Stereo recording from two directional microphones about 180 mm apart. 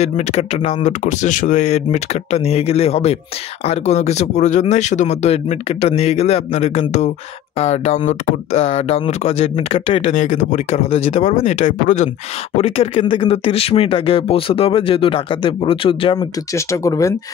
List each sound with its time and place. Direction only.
0.0 s speech: 35° left (ahead or behind)
10.1 s speech: 45° left (ahead or behind)
16.5 s speech: 20° left (ahead or behind)